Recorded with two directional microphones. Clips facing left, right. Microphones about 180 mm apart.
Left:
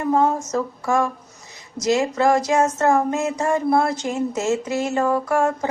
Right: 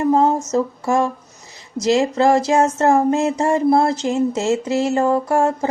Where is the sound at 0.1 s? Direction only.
25° right (ahead or behind).